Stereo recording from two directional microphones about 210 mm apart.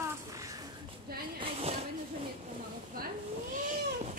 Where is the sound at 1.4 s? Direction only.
30° right (ahead or behind).